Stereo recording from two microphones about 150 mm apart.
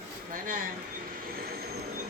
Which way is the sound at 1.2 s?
90° right.